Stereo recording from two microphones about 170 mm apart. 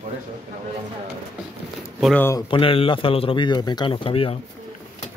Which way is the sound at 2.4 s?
30° left (ahead or behind).